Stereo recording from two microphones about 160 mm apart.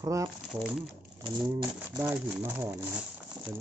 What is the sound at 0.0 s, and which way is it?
Speech, 20° right (ahead or behind).